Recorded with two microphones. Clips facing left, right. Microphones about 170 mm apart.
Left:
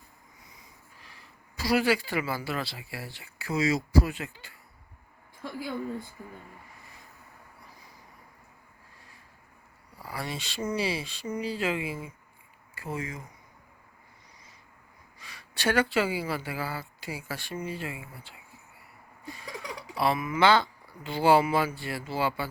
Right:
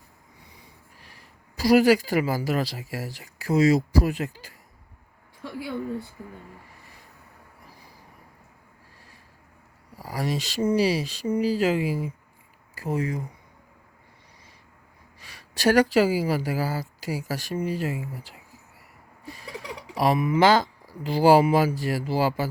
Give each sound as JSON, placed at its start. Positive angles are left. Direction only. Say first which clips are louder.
{"t": 0.3, "sound": "speech", "louder": "right 4 dB", "side_deg": -30}
{"t": 5.5, "sound": "speech", "louder": "right 3 dB", "side_deg": -75}
{"t": 10.0, "sound": "speech", "louder": "right 8 dB", "side_deg": -40}
{"t": 15.2, "sound": "speech", "louder": "right 7 dB", "side_deg": -40}
{"t": 19.4, "sound": "a sound", "louder": "right 2 dB", "side_deg": -35}
{"t": 20.0, "sound": "speech", "louder": "right 5 dB", "side_deg": -35}